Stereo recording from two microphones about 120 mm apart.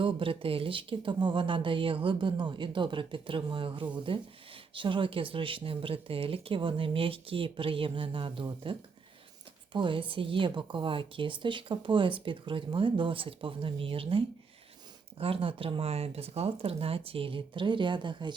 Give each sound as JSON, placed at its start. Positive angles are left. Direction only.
{"t": 0.0, "sound": "a woman's voice", "side_deg": -50}
{"t": 9.7, "sound": "a woman's voice", "side_deg": -45}